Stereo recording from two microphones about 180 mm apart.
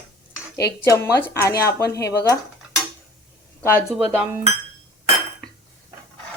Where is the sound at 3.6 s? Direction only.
10° left (ahead or behind).